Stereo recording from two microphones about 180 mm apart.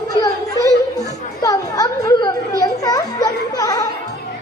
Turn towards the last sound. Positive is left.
turn(degrees=20)  # may be behind; listen again after turning